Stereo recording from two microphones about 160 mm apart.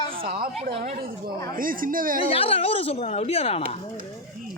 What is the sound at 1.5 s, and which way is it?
Speech, 60° right (ahead or behind).